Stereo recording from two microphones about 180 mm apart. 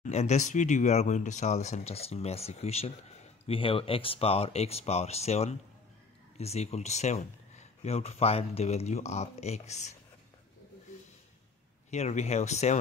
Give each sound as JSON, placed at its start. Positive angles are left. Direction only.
{"t": 0.0, "sound": "speech", "side_deg": 40}
{"t": 11.9, "sound": "speech", "side_deg": 40}